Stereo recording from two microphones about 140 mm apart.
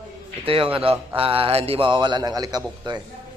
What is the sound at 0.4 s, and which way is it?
Speech, 40° right (ahead or behind).